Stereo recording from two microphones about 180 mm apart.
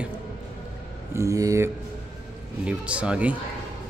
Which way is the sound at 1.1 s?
20° right (ahead or behind).